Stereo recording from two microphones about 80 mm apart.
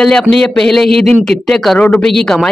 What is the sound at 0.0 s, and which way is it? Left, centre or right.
Speech, centre.